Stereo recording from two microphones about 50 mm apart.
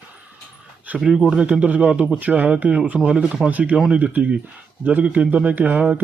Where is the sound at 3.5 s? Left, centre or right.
Right.